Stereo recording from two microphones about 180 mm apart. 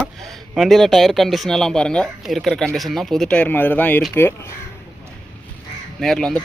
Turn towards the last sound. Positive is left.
turn(degrees=0)  # may be behind; listen again after turning